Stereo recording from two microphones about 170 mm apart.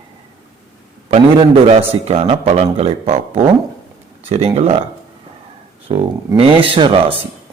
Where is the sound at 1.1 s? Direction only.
35° right (ahead or behind).